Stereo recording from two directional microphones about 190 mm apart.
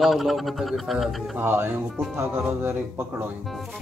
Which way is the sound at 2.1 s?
15° right (ahead or behind).